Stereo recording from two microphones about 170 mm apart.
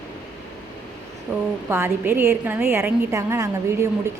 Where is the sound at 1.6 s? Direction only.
15° right (ahead or behind).